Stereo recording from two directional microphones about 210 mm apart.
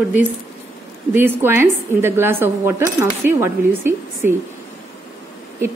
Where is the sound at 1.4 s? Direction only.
10° right (ahead or behind).